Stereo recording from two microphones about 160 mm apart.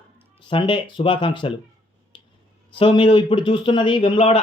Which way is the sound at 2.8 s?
35° left (ahead or behind).